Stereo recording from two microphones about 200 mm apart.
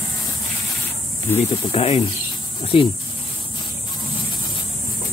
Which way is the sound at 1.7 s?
30° left (ahead or behind).